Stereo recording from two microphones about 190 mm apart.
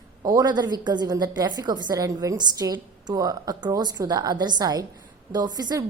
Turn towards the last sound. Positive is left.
turn(degrees=-20)  # may be behind; listen again after turning